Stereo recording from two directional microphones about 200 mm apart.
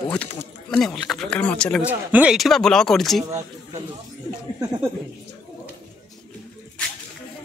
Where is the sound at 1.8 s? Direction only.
5° right (ahead or behind).